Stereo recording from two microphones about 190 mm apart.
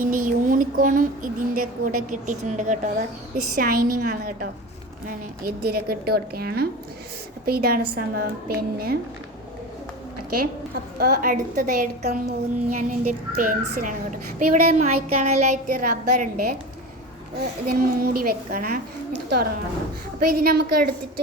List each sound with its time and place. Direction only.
0.0 s speech: 45° right (ahead or behind)
10.2 s a woman's voice: 50° right (ahead or behind)
17.7 s a woman's voice: 55° right (ahead or behind)